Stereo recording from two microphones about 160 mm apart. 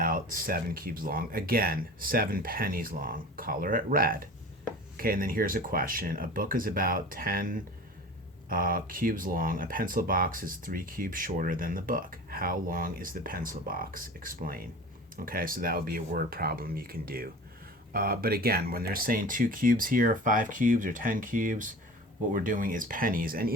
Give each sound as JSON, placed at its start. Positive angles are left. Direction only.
{"t": 0.0, "sound": "speech", "side_deg": -60}